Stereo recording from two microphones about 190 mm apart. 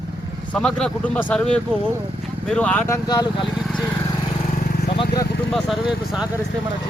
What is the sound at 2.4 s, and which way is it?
Speech, 5° left (ahead or behind).